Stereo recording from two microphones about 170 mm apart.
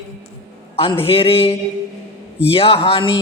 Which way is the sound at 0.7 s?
35° left (ahead or behind).